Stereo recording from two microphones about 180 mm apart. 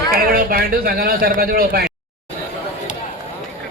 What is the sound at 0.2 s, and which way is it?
Speech, 55° right (ahead or behind).